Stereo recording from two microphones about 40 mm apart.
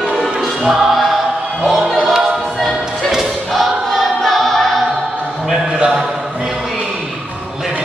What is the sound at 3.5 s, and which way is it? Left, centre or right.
Choir, centre.